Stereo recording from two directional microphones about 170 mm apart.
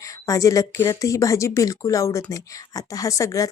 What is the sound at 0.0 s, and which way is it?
A woman's voice, 20° left (ahead or behind).